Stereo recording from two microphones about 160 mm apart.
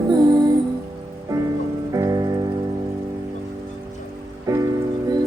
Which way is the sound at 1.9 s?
20° right (ahead or behind).